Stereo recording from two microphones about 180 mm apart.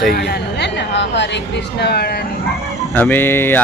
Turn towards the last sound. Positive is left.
turn(degrees=10)  # may be behind; listen again after turning